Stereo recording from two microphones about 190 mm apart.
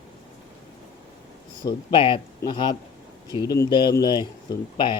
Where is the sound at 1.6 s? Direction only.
25° left (ahead or behind).